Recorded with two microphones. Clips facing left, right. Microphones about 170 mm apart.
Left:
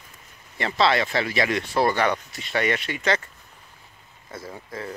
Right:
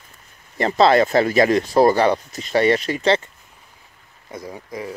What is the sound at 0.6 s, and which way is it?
Speech, 40° right (ahead or behind).